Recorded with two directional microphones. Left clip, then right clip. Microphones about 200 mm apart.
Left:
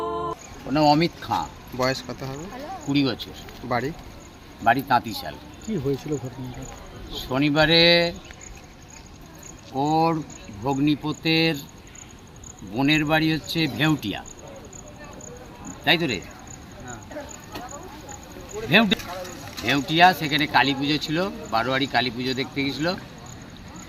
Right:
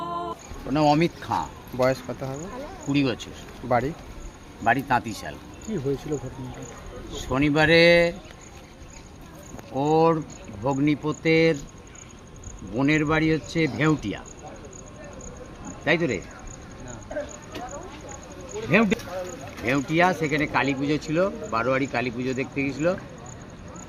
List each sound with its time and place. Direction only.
0.7 s a man's voice: centre (ahead or behind)
1.8 s a man's voice: 15° right (ahead or behind)
3.7 s a man's voice: 15° right (ahead or behind)
5.6 s speech: 30° left (ahead or behind)
7.3 s a man's voice: centre (ahead or behind)
9.7 s a man's voice: 5° right (ahead or behind)
12.7 s a man's voice: centre (ahead or behind)
15.8 s a man's voice: centre (ahead or behind)
18.5 s a sound: centre (ahead or behind)
19.6 s a man's voice: centre (ahead or behind)